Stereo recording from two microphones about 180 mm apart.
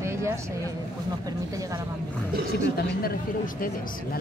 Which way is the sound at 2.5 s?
60° left (ahead or behind).